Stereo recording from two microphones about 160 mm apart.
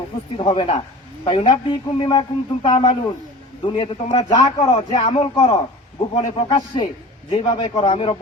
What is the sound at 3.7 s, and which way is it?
A man's voice, 35° left (ahead or behind).